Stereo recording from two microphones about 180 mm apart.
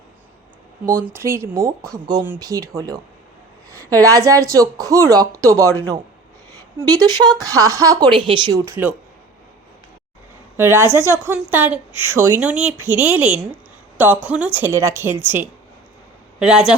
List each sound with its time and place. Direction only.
0.9 s a woman's voice: 15° right (ahead or behind)
6.7 s speech: 20° right (ahead or behind)
10.6 s a woman's voice: 15° right (ahead or behind)